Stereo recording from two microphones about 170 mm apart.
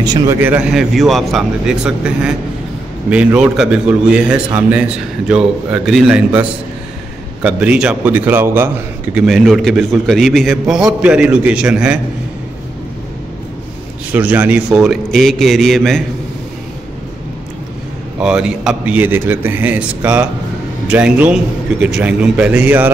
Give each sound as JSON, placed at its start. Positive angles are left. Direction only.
{"t": 0.0, "sound": "speech", "side_deg": -20}
{"t": 0.4, "sound": "a man's voice", "side_deg": -10}
{"t": 7.4, "sound": "a man's voice", "side_deg": -5}
{"t": 9.1, "sound": "a man's voice", "side_deg": 0}
{"t": 14.1, "sound": "a man's voice", "side_deg": -10}
{"t": 18.2, "sound": "a man's voice", "side_deg": -5}